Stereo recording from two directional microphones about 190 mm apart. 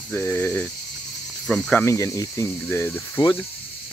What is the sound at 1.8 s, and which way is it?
Speech, 15° left (ahead or behind).